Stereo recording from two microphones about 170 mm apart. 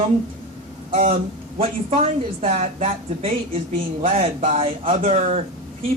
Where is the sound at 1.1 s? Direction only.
35° right (ahead or behind).